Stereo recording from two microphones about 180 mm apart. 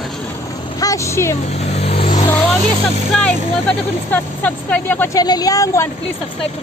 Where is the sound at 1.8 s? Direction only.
30° left (ahead or behind).